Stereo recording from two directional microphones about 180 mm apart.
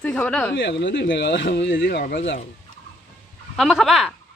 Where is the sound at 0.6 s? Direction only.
75° left (ahead or behind).